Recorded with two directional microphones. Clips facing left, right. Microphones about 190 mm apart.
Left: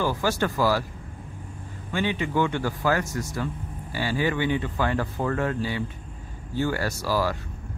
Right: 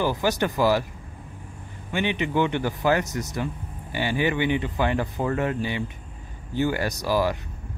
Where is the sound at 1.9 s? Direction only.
20° right (ahead or behind).